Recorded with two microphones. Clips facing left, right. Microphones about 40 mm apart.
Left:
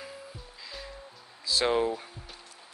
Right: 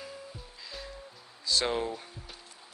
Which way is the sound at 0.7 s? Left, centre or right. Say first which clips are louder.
Even; centre.